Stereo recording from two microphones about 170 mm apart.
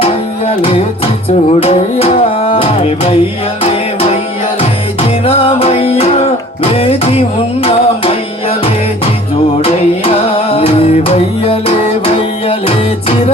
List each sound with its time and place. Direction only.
1.5 s music: 35° left (ahead or behind)